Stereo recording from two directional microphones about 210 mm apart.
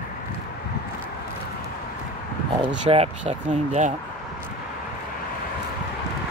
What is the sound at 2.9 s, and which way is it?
Speech, 30° right (ahead or behind).